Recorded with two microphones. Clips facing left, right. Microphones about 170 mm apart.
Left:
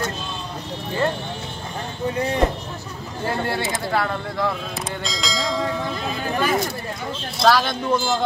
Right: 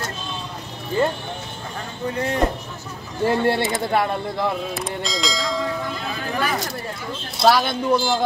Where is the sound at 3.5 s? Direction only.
20° right (ahead or behind).